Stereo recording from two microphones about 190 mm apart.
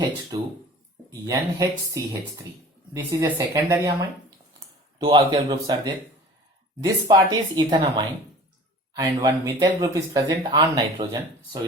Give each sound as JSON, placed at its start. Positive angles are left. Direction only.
{"t": 1.2, "sound": "speech", "side_deg": -20}
{"t": 5.0, "sound": "speech", "side_deg": -20}